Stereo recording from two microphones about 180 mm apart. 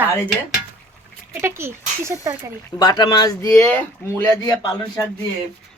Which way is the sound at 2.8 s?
25° left (ahead or behind).